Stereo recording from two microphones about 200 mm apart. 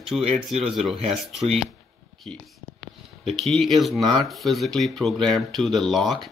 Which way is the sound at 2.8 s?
Centre (ahead or behind).